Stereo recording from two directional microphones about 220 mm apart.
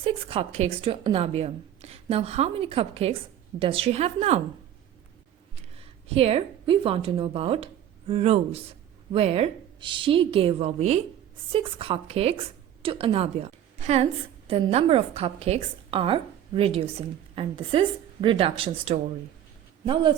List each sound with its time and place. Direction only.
0.0 s a woman's voice: 25° right (ahead or behind)
5.7 s a woman's voice: 25° right (ahead or behind)